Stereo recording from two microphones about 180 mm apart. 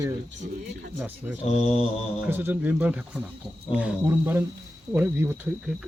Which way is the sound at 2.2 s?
10° right (ahead or behind).